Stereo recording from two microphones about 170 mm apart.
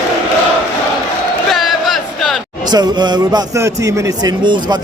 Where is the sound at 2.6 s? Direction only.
25° right (ahead or behind).